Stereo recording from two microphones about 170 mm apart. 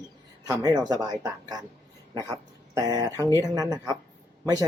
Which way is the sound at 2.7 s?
20° right (ahead or behind).